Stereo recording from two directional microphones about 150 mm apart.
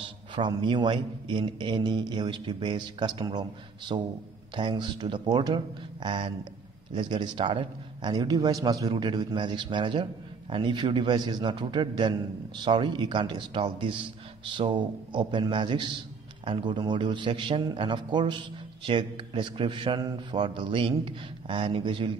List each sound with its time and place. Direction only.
0.4 s a man's voice: 30° right (ahead or behind)